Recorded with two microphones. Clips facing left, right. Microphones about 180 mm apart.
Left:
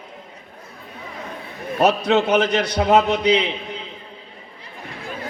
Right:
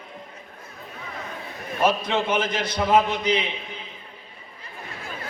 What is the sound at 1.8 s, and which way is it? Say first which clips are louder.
A man's voice: left 5 dB; 75° left (ahead or behind).